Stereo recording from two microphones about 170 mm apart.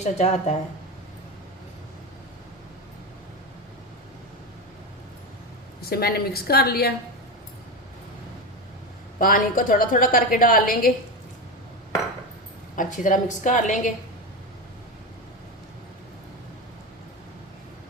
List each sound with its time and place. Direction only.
0.0 s speech: 40° left (ahead or behind)
5.8 s a woman's voice: 65° left (ahead or behind)
9.1 s a woman's voice: 55° left (ahead or behind)
12.7 s a woman's voice: 50° left (ahead or behind)